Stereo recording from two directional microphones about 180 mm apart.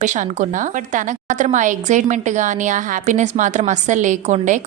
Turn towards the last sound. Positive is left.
turn(degrees=-45)  # may be behind; listen again after turning